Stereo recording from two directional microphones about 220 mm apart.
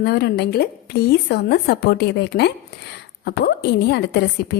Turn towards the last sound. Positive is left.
turn(degrees=50)  # may be behind; listen again after turning